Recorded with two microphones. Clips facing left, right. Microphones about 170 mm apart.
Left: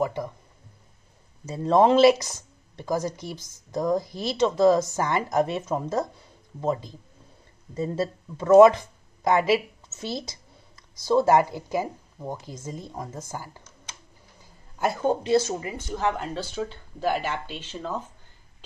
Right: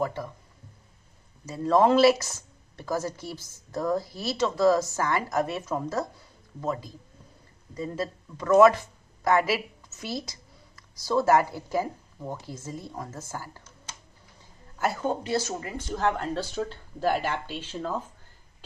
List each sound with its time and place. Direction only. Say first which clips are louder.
0.0 s speech: left 3 dB; 15° left (ahead or behind)
1.4 s speech: left 2 dB; 25° left (ahead or behind)
16.0 s speech: right 1 dB; centre (ahead or behind)